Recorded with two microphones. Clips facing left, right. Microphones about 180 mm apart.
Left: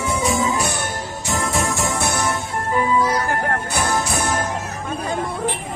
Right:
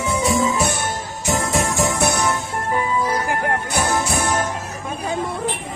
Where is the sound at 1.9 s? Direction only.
20° right (ahead or behind).